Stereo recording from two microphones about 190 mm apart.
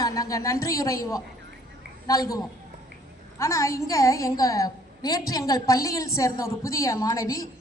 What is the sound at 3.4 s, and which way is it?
A woman's voice, 15° left (ahead or behind).